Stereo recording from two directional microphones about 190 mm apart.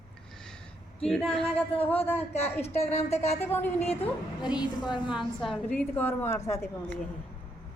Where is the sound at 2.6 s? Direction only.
35° left (ahead or behind).